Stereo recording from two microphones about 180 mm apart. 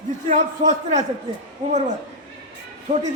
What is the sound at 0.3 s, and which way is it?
Speech, 45° right (ahead or behind).